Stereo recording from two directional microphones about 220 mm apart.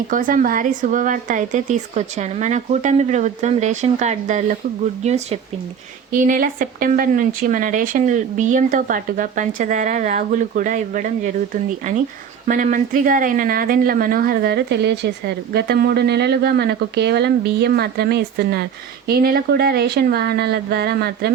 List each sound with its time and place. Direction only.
0.1 s speech: 35° right (ahead or behind)
12.5 s speech: 35° right (ahead or behind)